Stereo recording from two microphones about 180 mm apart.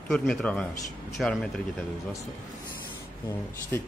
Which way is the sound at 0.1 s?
5° left (ahead or behind).